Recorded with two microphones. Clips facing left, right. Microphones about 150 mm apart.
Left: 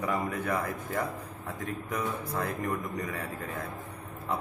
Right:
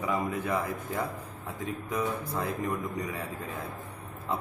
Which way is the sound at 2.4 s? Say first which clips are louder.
Even; 20° right (ahead or behind).